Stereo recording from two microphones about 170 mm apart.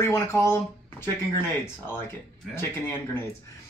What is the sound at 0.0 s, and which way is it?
Speech, 15° left (ahead or behind).